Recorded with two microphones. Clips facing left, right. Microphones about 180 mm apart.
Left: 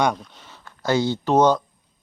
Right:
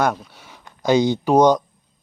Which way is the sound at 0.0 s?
5° right (ahead or behind).